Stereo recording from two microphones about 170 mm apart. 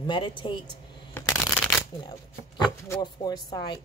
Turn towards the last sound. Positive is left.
turn(degrees=25)  # may be behind; listen again after turning